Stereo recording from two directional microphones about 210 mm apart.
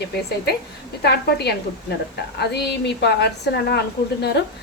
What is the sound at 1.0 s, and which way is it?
A woman's voice, 50° left (ahead or behind).